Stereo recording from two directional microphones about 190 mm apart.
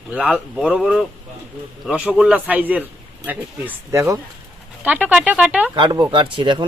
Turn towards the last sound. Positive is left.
turn(degrees=-25)  # may be behind; listen again after turning